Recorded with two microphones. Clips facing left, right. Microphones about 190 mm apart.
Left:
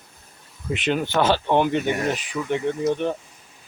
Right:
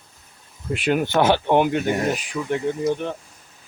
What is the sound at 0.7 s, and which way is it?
Speech, 10° right (ahead or behind).